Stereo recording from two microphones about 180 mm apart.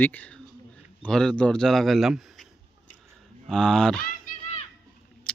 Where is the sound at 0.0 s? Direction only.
10° left (ahead or behind).